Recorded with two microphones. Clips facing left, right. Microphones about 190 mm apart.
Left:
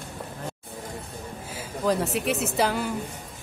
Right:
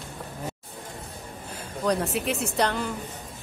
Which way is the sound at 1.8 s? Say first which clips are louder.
Left 1 dB; centre (ahead or behind).